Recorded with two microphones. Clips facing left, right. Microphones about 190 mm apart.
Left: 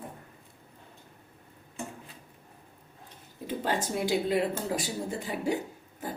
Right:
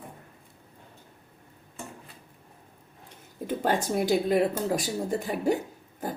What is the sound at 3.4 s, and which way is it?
Speech, 45° right (ahead or behind).